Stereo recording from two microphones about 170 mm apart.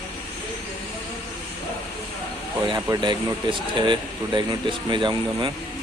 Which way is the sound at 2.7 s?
25° right (ahead or behind).